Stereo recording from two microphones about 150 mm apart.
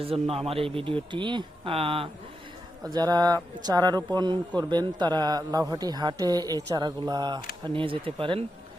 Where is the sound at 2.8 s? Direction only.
25° right (ahead or behind).